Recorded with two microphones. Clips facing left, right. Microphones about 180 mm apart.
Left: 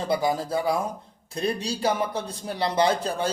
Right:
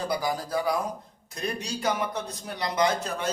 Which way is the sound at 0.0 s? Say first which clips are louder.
Left 4 dB; 25° left (ahead or behind).